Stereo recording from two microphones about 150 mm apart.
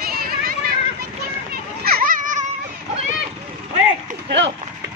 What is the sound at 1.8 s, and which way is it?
Children playing, 80° right.